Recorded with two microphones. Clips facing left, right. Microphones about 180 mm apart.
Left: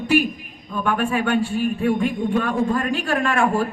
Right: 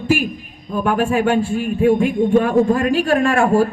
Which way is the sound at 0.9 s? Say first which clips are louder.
Right 4 dB; 45° right (ahead or behind).